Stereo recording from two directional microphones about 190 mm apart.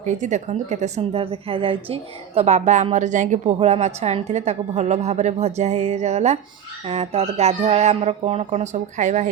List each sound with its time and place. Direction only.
0.0 s a woman's voice: 40° right (ahead or behind)